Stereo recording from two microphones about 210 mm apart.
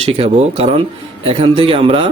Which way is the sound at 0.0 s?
30° right (ahead or behind).